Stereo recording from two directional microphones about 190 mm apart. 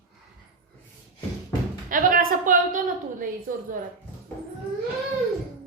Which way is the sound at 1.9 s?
45° right (ahead or behind).